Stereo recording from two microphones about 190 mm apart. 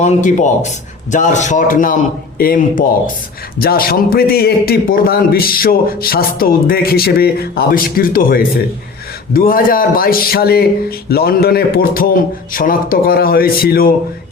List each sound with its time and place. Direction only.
0.0 s a man's voice: 40° left (ahead or behind)